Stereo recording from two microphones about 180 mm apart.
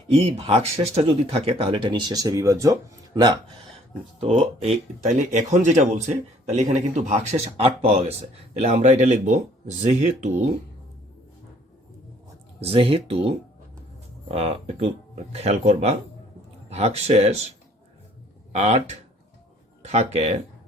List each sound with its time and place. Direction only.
0.2 s speech: 35° right (ahead or behind); by 2.7 s 15° right (ahead or behind)
4.2 s speech: 35° right (ahead or behind)
12.5 s speech: 35° right (ahead or behind)
18.5 s speech: 40° right (ahead or behind)